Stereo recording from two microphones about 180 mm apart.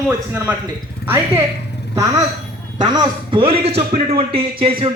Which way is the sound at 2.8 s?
25° right (ahead or behind).